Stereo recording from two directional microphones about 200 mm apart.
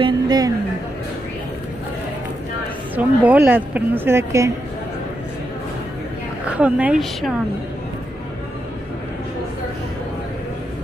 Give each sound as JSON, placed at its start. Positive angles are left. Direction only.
{"t": 0.0, "sound": "a woman's voice", "side_deg": -20}
{"t": 3.0, "sound": "a woman's voice", "side_deg": -10}
{"t": 6.4, "sound": "speech", "side_deg": -5}